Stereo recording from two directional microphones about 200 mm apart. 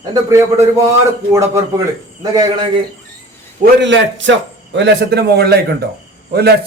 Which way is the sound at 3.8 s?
65° right (ahead or behind).